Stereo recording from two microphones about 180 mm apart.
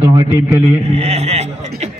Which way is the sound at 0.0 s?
30° right (ahead or behind).